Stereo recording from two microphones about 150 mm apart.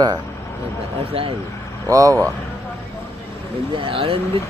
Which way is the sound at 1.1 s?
40° right (ahead or behind).